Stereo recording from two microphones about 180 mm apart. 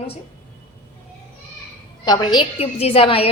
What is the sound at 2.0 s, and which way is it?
A woman's voice, 25° left (ahead or behind).